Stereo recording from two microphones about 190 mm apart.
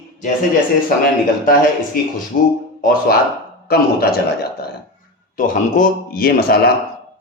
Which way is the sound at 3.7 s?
55° left (ahead or behind).